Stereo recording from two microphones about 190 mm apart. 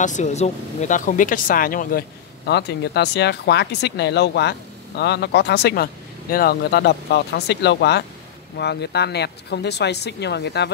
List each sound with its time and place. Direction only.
0.0 s speech: 40° left (ahead or behind); by 10.7 s 60° left (ahead or behind)